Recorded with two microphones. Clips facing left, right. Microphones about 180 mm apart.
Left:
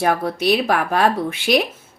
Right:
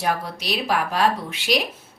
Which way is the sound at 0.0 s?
55° left (ahead or behind).